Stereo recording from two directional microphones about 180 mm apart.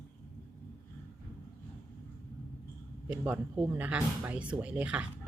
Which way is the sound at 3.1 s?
10° right (ahead or behind).